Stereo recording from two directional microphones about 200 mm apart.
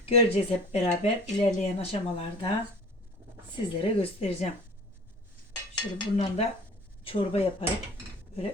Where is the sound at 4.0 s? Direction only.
30° left (ahead or behind).